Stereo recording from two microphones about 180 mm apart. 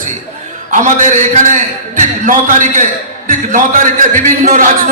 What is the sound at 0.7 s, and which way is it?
A man's voice, 45° right (ahead or behind).